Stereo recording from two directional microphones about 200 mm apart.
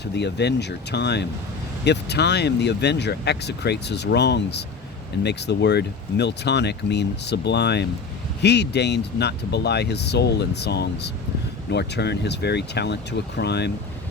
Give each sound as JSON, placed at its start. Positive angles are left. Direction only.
{"t": 0.0, "sound": "speech", "side_deg": 60}